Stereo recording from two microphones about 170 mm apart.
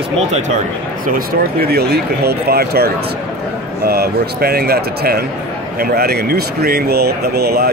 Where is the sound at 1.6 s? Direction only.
70° right (ahead or behind).